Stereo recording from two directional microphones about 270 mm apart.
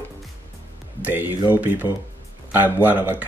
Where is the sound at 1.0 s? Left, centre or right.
Centre.